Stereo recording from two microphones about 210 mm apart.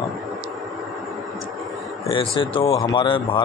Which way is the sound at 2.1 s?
25° left (ahead or behind).